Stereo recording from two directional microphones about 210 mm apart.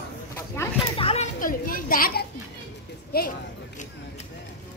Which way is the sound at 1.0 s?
25° left (ahead or behind).